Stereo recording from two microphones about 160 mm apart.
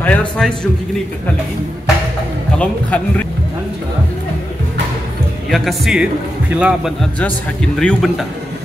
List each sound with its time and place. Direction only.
0.0 s speech: 10° left (ahead or behind)
2.6 s speech: 10° left (ahead or behind)
5.5 s speech: centre (ahead or behind)